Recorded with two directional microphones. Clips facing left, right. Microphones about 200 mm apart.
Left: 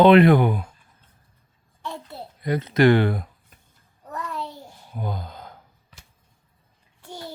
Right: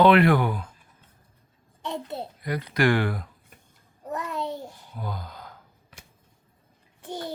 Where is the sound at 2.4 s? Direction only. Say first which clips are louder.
Left 6 dB; 25° left (ahead or behind).